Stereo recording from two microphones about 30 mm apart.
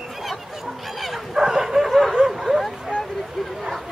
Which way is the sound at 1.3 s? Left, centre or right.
Centre.